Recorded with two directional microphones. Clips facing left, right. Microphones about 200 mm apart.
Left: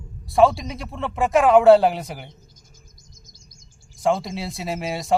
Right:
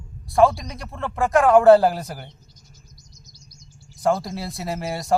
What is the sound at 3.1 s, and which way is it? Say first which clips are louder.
Chirp: right 2 dB; 50° left (ahead or behind).